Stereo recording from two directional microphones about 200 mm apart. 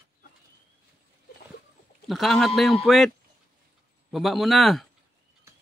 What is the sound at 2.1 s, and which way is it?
Speech, centre (ahead or behind).